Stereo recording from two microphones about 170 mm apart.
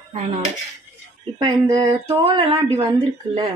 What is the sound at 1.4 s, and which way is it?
Speech, 25° right (ahead or behind).